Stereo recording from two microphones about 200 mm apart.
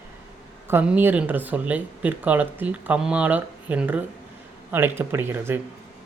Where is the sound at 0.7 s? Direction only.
10° right (ahead or behind).